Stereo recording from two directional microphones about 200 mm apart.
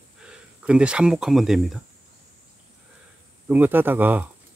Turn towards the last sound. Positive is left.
turn(degrees=-10)  # may be behind; listen again after turning